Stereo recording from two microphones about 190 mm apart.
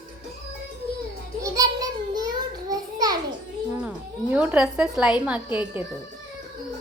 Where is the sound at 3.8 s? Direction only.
5° right (ahead or behind).